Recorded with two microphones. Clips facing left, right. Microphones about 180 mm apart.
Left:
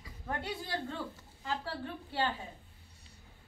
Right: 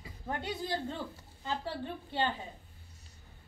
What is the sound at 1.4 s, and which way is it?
Speech, 25° right (ahead or behind).